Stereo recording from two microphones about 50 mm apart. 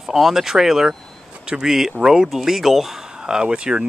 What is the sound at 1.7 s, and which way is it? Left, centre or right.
Speech, centre.